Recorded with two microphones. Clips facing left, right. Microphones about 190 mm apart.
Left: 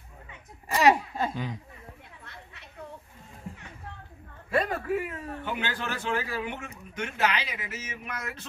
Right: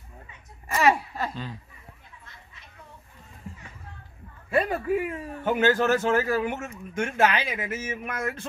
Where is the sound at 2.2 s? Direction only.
65° left (ahead or behind).